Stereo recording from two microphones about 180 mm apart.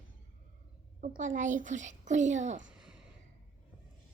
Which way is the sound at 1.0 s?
45° right (ahead or behind).